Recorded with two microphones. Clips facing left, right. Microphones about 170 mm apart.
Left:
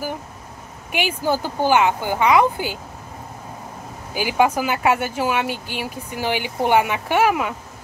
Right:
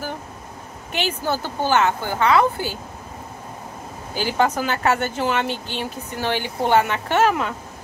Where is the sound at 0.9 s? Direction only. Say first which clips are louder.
Left 2 dB; 10° left (ahead or behind).